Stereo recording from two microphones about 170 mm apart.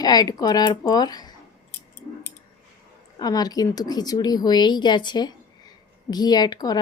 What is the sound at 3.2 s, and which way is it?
Speech, 25° left (ahead or behind).